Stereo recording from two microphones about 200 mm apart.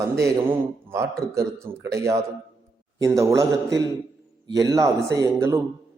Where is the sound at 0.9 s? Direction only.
15° right (ahead or behind).